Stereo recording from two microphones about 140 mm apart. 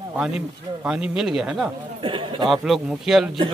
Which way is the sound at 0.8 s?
5° right (ahead or behind).